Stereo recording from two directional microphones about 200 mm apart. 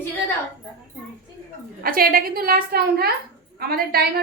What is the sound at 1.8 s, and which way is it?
A woman's voice, 45° right (ahead or behind).